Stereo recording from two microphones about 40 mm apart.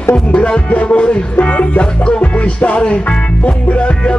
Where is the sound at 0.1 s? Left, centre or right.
Left.